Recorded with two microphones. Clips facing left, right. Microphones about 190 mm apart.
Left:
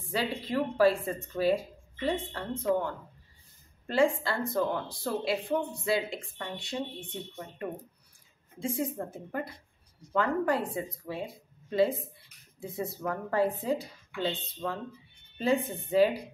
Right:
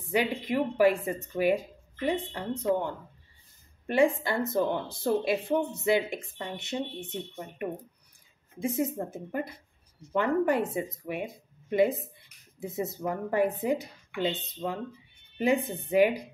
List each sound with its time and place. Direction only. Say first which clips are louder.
0.1 s a woman's voice: right 3 dB; 15° right (ahead or behind)